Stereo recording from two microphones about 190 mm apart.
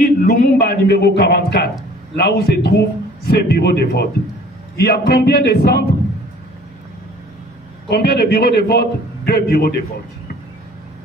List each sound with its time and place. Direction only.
0.2 s a man's voice: 55° left (ahead or behind)
7.9 s a man's voice: 60° left (ahead or behind)